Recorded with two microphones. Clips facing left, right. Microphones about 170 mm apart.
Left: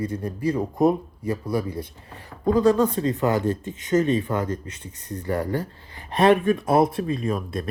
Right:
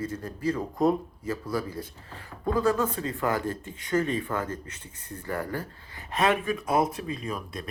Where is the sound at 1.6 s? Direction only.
25° left (ahead or behind).